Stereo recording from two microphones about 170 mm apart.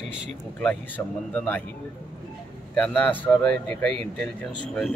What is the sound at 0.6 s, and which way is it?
Speech, 10° left (ahead or behind).